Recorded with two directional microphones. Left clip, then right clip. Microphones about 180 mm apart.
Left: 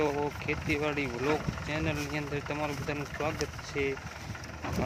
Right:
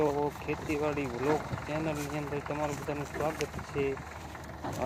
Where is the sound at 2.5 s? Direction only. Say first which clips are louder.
Even; 10° left (ahead or behind).